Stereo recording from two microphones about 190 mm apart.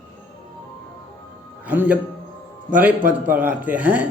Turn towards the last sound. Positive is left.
turn(degrees=-10)  # may be behind; listen again after turning